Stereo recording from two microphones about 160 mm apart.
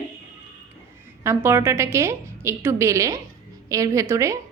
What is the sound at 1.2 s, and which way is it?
A woman's voice, 15° right (ahead or behind).